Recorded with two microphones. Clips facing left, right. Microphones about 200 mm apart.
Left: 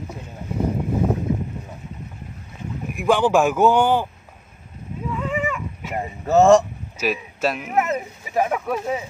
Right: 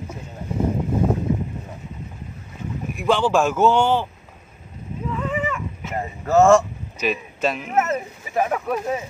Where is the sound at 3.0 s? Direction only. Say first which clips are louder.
Left 2 dB; 15° left (ahead or behind).